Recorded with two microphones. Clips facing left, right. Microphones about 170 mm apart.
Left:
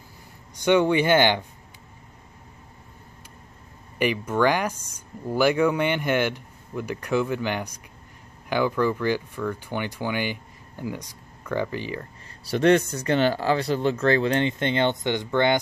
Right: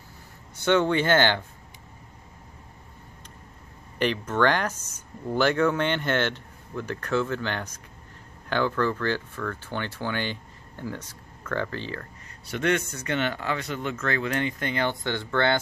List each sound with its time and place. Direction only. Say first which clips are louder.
0.6 s speech: left 3 dB; 15° left (ahead or behind)
4.0 s speech: left 2 dB; 10° left (ahead or behind)
12.4 s speech: left 7 dB; 35° left (ahead or behind); by 15.6 s 15° left (ahead or behind)